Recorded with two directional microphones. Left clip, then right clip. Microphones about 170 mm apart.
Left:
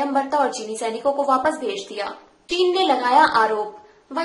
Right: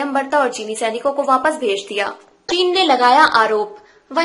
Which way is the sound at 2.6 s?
25° right (ahead or behind).